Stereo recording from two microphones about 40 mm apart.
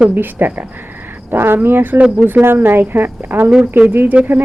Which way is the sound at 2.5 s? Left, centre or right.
Right.